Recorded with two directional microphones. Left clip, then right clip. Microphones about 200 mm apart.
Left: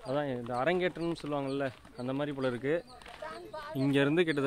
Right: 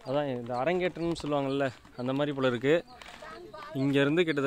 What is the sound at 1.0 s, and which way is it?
Speech, 50° right (ahead or behind).